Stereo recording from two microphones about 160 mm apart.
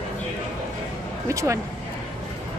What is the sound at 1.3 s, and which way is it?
Speech, 20° right (ahead or behind).